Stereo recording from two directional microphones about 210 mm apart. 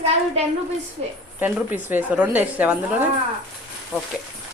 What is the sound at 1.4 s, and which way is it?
Speech, 10° right (ahead or behind).